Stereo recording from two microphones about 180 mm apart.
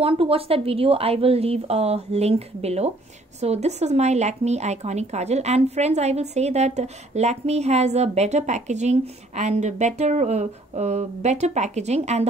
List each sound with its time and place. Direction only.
0.0 s speech: 30° right (ahead or behind)